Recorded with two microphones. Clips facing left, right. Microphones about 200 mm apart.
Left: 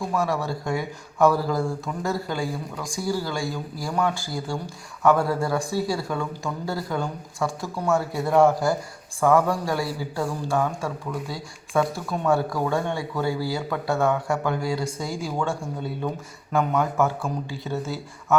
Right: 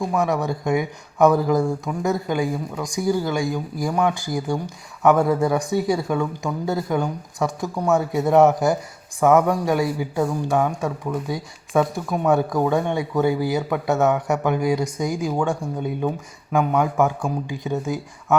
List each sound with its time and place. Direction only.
0.0 s speech: 15° right (ahead or behind)